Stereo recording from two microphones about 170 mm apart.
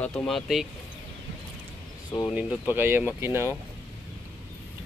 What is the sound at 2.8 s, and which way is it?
Speech, 10° right (ahead or behind).